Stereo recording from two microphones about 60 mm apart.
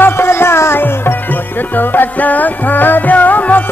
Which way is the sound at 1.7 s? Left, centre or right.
Left.